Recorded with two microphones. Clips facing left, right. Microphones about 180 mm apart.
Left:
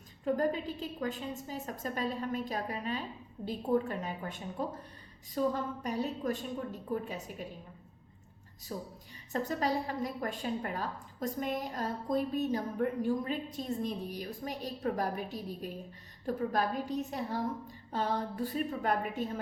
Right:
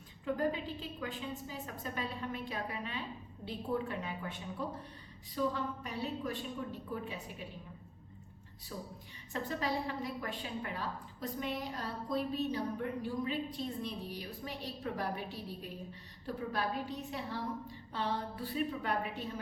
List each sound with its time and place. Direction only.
0.3 s a woman's voice: 45° left (ahead or behind)
8.7 s a woman's voice: 40° left (ahead or behind)